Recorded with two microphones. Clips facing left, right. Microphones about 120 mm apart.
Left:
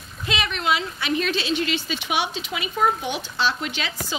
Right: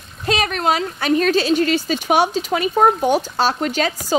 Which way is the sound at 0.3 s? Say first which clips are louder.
Right 6 dB; 45° right (ahead or behind).